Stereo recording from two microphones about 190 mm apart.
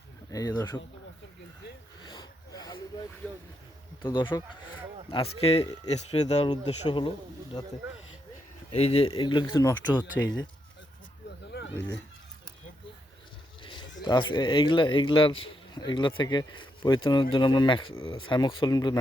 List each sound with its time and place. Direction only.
0.3 s speech: 20° left (ahead or behind)
2.0 s a sound: 20° left (ahead or behind)
3.2 s speech: 5° left (ahead or behind)
4.0 s speech: 25° left (ahead or behind)
6.8 s speech: 25° left (ahead or behind)
8.7 s speech: 35° left (ahead or behind)
9.0 s speech: 25° left (ahead or behind)
10.2 s speech: 80° left
11.5 s snake: 70° left (ahead or behind)
13.6 s a sound: 25° left (ahead or behind)
14.0 s speech: 25° left (ahead or behind)